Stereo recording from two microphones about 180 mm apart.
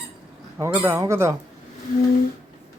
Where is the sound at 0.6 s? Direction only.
15° right (ahead or behind).